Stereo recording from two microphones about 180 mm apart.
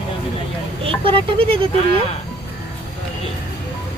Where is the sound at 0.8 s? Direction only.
30° right (ahead or behind).